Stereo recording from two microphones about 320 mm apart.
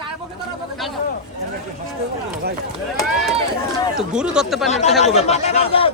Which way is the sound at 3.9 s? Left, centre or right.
Centre.